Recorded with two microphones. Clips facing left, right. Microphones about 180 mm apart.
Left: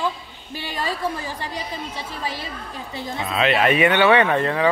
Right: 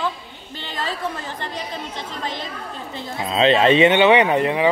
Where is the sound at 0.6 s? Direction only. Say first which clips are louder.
Left 1 dB; 10° left (ahead or behind).